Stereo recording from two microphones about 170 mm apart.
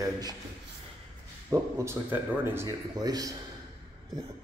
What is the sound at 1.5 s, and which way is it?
Speech, 15° right (ahead or behind).